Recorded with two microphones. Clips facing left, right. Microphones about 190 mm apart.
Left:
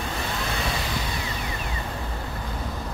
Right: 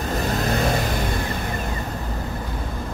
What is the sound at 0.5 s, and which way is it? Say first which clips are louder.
Vehicle: right 7 dB; 45° right (ahead or behind).